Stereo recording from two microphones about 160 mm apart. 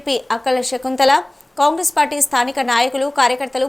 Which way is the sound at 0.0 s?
Centre (ahead or behind).